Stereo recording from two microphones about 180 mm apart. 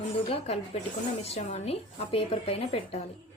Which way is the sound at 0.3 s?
35° left (ahead or behind).